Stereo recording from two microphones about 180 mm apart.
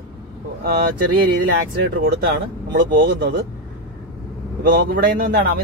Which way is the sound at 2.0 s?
60° right (ahead or behind).